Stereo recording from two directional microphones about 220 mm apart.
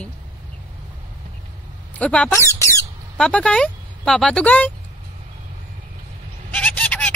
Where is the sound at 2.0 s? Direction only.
5° left (ahead or behind).